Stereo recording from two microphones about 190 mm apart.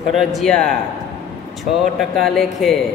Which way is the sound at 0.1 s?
Centre (ahead or behind).